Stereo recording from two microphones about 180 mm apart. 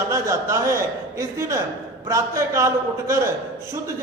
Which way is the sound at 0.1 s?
15° right (ahead or behind).